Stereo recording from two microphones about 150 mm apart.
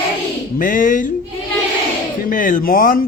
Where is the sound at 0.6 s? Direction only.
60° left (ahead or behind).